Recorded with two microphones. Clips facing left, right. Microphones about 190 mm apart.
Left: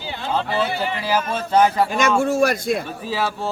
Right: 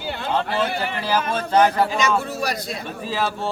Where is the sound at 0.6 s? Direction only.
55° right (ahead or behind).